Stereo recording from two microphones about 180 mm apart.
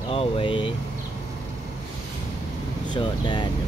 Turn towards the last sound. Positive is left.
turn(degrees=25)  # may be behind; listen again after turning